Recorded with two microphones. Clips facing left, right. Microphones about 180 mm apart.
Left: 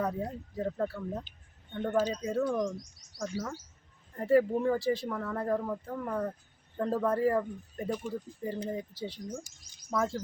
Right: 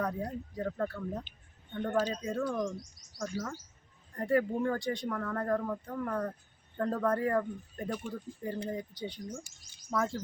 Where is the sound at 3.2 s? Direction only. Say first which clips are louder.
Left 1 dB; 20° left (ahead or behind).